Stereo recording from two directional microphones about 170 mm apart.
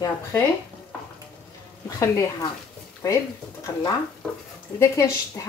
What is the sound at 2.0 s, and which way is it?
Speech, 15° left (ahead or behind).